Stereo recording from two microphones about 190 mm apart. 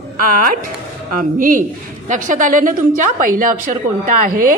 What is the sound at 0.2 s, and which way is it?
A woman's voice, 45° right (ahead or behind).